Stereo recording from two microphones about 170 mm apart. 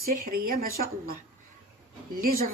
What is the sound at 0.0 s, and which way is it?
Speech, 60° right (ahead or behind).